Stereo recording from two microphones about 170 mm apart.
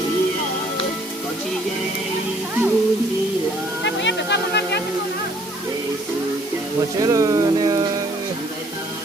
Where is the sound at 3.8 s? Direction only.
90° left.